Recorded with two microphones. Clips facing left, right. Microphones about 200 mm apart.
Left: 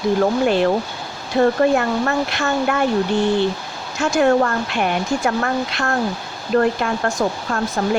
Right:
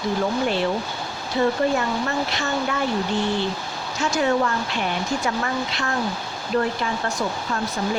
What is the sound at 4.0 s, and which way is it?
Speech, 55° left (ahead or behind).